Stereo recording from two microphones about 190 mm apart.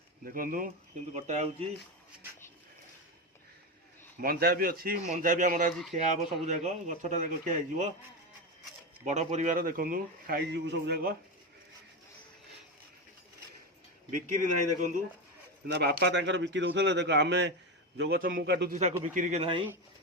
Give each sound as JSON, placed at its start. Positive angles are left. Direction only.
{"t": 0.3, "sound": "a man's voice", "side_deg": -50}
{"t": 1.1, "sound": "a man's voice", "side_deg": -35}
{"t": 4.2, "sound": "a man's voice", "side_deg": -55}
{"t": 9.0, "sound": "a man's voice", "side_deg": -35}
{"t": 14.1, "sound": "a man's voice", "side_deg": -40}
{"t": 15.6, "sound": "a man's voice", "side_deg": -60}
{"t": 18.2, "sound": "a man's voice", "side_deg": -50}
{"t": 18.7, "sound": "a man's voice", "side_deg": -35}